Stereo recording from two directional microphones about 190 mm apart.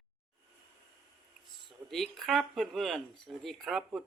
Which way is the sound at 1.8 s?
Centre (ahead or behind).